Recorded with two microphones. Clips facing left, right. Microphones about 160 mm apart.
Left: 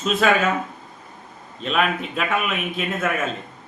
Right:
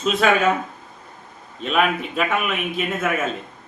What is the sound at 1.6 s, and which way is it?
A man's voice, 5° right (ahead or behind).